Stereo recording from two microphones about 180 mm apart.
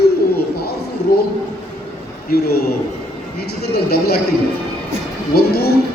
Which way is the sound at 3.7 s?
60° left (ahead or behind).